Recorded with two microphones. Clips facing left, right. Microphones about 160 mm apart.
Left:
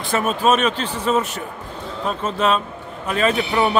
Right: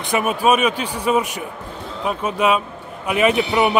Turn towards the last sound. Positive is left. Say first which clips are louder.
# right 2 dB
turn(degrees=-15)  # may be behind; listen again after turning